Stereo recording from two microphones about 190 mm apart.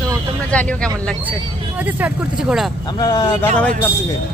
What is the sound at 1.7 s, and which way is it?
Speech, 10° right (ahead or behind).